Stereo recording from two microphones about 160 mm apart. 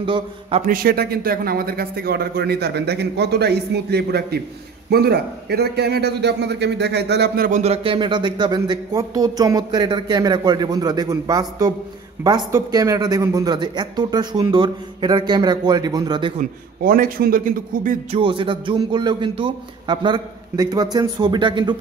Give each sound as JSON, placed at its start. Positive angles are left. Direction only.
{"t": 0.0, "sound": "a man's voice", "side_deg": -30}
{"t": 0.6, "sound": "a man's voice", "side_deg": -65}
{"t": 7.5, "sound": "speech", "side_deg": -40}
{"t": 16.3, "sound": "a man's voice", "side_deg": -60}
{"t": 18.1, "sound": "speech", "side_deg": -30}